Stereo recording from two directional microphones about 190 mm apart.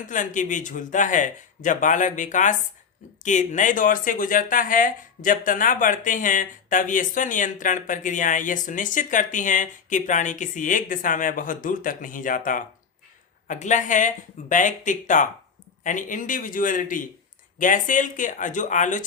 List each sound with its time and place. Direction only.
0.1 s speech: 40° left (ahead or behind)
13.5 s speech: 40° left (ahead or behind)